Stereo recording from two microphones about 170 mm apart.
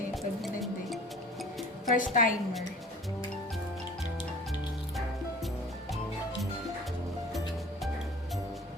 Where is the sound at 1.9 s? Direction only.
50° left (ahead or behind).